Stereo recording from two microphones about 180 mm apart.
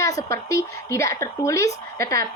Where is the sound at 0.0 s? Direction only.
15° left (ahead or behind).